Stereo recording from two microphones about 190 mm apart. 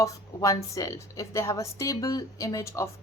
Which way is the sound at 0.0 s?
15° left (ahead or behind).